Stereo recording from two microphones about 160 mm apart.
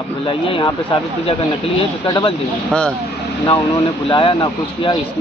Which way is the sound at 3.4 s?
30° left (ahead or behind).